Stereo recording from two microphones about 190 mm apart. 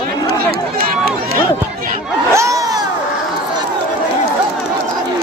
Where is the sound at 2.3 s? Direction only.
15° right (ahead or behind).